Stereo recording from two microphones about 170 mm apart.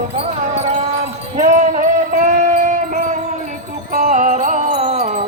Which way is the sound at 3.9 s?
50° right (ahead or behind).